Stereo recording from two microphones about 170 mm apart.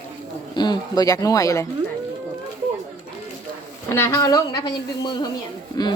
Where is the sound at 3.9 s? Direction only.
15° left (ahead or behind).